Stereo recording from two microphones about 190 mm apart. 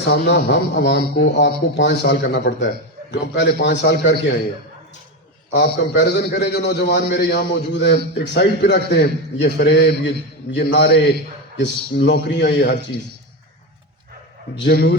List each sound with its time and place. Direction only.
0.0 s a man's voice: 65° left (ahead or behind)
5.5 s a man's voice: 65° left (ahead or behind)
14.5 s a man's voice: 60° left (ahead or behind)